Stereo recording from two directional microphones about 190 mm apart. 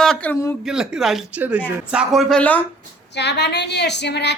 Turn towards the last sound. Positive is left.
turn(degrees=65)  # may be behind; listen again after turning